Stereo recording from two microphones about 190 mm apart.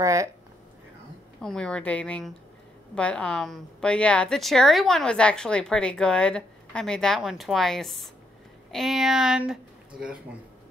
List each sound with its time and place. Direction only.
0.0 s speech: 15° right (ahead or behind)
1.4 s a woman's voice: 5° left (ahead or behind)